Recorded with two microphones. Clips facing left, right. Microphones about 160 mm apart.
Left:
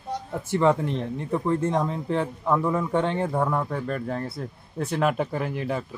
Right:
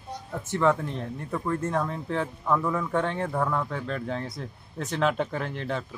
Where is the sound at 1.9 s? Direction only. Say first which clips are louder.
Left 3 dB; 10° left (ahead or behind).